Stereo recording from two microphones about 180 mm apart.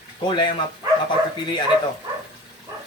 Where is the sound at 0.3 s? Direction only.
25° left (ahead or behind).